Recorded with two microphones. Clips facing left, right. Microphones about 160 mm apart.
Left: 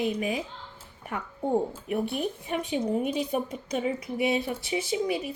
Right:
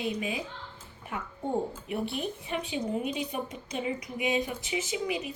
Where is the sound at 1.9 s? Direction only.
45° left (ahead or behind).